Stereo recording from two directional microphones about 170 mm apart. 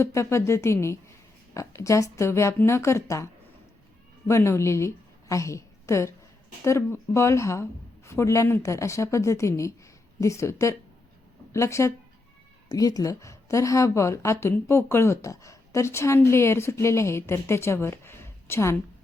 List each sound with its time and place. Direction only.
0.0 s a woman's voice: 15° left (ahead or behind)
4.3 s a woman's voice: 15° left (ahead or behind)